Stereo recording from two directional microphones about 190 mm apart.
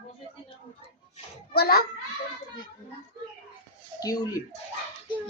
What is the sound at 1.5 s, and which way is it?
Speech, 55° left (ahead or behind).